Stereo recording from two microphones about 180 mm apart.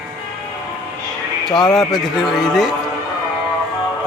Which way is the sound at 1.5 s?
20° left (ahead or behind).